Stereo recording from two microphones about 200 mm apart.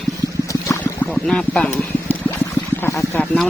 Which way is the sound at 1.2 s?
5° left (ahead or behind).